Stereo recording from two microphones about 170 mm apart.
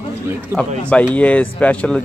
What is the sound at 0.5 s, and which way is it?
Speech, 15° right (ahead or behind).